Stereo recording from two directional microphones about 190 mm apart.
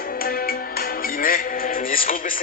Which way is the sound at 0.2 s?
50° left (ahead or behind).